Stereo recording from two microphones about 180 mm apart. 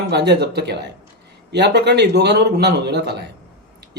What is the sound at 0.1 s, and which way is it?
Speech, 65° right (ahead or behind).